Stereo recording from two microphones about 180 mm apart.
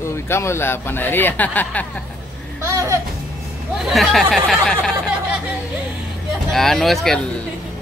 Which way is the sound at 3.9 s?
Centre (ahead or behind).